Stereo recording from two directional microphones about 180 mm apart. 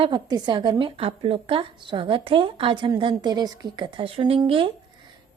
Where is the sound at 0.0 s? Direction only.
25° right (ahead or behind).